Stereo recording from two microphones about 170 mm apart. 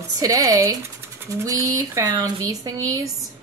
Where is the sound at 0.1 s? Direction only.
20° right (ahead or behind).